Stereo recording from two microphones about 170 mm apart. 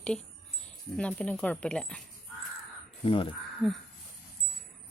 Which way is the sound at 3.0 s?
30° left (ahead or behind).